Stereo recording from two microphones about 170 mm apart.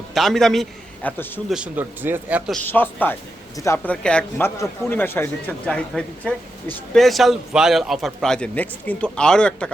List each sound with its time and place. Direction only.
0.1 s a man's voice: centre (ahead or behind)
2.5 s a man's voice: 10° left (ahead or behind)